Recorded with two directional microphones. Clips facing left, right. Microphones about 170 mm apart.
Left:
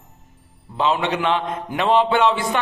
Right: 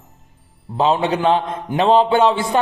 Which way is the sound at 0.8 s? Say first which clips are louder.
Right 4 dB; 35° right (ahead or behind).